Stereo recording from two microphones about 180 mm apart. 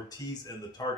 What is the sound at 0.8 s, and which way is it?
Speech, 20° left (ahead or behind).